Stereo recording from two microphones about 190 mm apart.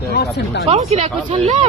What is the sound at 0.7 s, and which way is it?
Speech, 35° right (ahead or behind).